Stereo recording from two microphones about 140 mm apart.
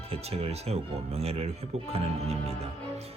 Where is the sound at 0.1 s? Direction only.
45° right (ahead or behind).